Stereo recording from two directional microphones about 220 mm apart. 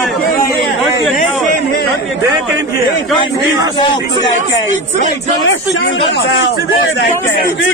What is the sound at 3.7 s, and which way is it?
Speech, 20° left (ahead or behind).